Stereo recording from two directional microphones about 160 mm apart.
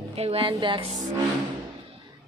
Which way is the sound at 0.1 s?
40° right (ahead or behind).